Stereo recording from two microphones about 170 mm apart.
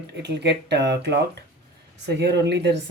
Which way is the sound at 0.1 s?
85° right.